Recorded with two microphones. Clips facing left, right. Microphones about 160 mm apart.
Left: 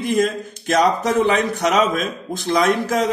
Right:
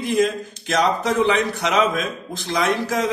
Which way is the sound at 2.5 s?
50° left (ahead or behind).